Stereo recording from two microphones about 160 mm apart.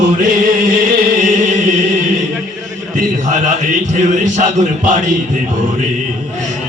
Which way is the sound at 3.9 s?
50° right (ahead or behind).